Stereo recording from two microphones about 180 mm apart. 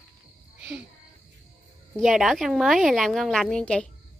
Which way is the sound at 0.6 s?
10° right (ahead or behind).